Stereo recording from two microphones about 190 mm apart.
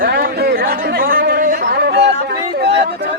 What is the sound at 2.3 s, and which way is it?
Chatter, 60° right (ahead or behind).